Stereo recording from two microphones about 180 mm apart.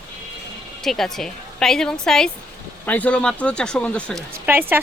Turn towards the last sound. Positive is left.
turn(degrees=-10)  # may be behind; listen again after turning